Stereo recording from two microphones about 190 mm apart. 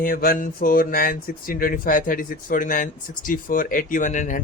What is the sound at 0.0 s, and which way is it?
Speech, 50° left (ahead or behind).